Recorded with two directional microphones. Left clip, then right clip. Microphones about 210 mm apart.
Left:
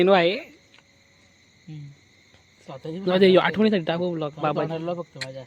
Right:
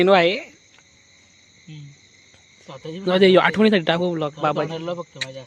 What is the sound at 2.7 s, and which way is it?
Speech, 5° left (ahead or behind).